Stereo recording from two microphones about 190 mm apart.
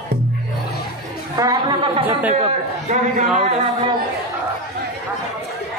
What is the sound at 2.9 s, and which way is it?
Speech, 40° right (ahead or behind).